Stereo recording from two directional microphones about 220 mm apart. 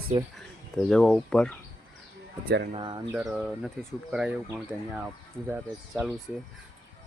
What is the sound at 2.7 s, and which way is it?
Speech, 20° right (ahead or behind).